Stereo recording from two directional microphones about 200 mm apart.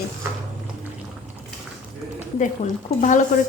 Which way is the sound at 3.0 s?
35° left (ahead or behind).